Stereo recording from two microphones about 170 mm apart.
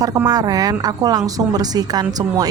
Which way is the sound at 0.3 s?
20° right (ahead or behind).